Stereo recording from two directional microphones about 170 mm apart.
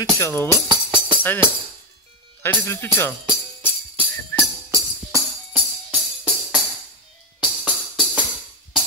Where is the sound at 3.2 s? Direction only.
25° right (ahead or behind).